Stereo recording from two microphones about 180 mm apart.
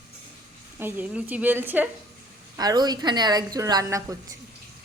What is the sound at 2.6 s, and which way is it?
A woman's voice, 20° right (ahead or behind).